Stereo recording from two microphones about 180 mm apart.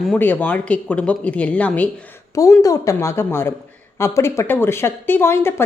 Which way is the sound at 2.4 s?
20° left (ahead or behind).